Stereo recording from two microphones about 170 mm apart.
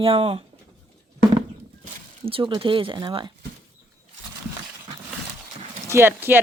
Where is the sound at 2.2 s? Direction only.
30° right (ahead or behind).